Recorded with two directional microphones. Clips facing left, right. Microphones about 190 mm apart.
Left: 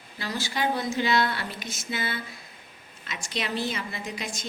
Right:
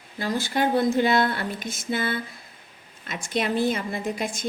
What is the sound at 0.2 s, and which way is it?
A woman's voice, 50° right (ahead or behind).